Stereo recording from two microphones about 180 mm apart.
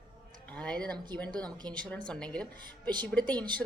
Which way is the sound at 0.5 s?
5° left (ahead or behind).